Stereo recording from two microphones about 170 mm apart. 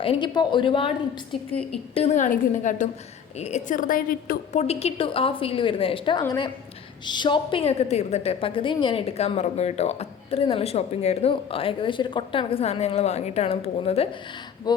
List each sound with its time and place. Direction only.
0.0 s a woman's voice: 30° left (ahead or behind); by 4.6 s 55° left (ahead or behind)
4.6 s a woman's voice: 35° left (ahead or behind)